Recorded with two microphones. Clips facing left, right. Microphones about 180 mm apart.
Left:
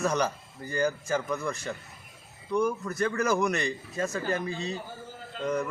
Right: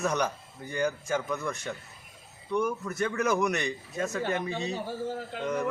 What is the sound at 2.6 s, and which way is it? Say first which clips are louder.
A man's voice: left 2 dB; centre (ahead or behind).